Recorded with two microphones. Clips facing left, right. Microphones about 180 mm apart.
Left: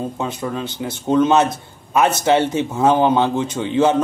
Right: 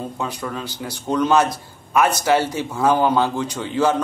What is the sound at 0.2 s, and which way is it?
Speech, 20° left (ahead or behind).